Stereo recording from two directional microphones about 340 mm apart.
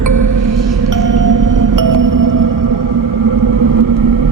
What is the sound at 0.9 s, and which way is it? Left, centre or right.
Music, right.